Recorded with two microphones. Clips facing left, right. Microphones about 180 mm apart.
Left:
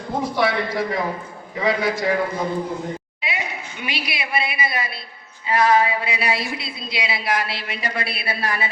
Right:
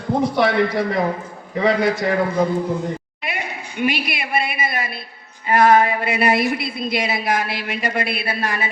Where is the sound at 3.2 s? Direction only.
55° right (ahead or behind).